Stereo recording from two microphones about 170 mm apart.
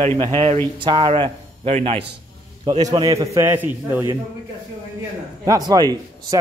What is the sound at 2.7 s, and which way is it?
A man's voice, 25° right (ahead or behind).